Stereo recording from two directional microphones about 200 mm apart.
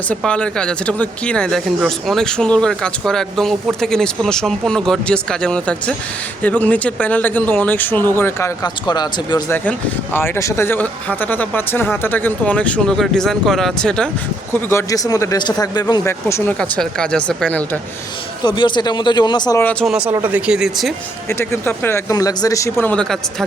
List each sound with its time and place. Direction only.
0.1 s speech: 5° left (ahead or behind); by 9.6 s 20° left (ahead or behind)
9.6 s speech: 10° left (ahead or behind)
18.4 s speech: 20° left (ahead or behind)
19.8 s speech: 5° right (ahead or behind)
21.2 s speech: 15° left (ahead or behind)